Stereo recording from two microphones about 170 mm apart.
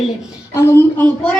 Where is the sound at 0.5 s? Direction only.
15° left (ahead or behind).